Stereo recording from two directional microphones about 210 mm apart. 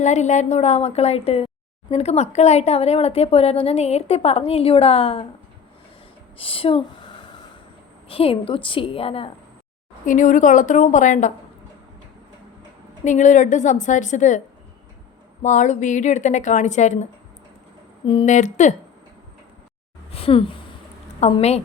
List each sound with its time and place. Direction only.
0.0 s a woman's voice: 35° left (ahead or behind)
6.3 s speech: 25° left (ahead or behind)
10.1 s a woman's voice: 35° left (ahead or behind)
13.1 s a woman's voice: 35° left (ahead or behind)
18.0 s a woman's voice: 25° left (ahead or behind)
20.1 s a sound: 25° left (ahead or behind)
21.2 s a woman's voice: 30° left (ahead or behind)